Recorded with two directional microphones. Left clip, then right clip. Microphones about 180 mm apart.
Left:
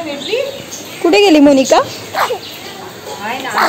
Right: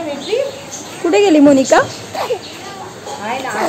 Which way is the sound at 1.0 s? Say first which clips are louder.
Left 2 dB; 10° left (ahead or behind).